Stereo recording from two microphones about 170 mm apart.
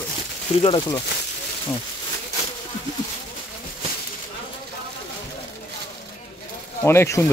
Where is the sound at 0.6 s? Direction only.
30° left (ahead or behind).